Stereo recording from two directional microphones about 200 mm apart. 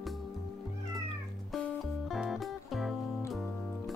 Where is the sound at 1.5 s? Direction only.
Centre (ahead or behind).